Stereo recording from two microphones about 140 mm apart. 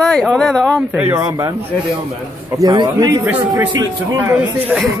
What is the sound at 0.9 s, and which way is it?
Speech, 10° right (ahead or behind).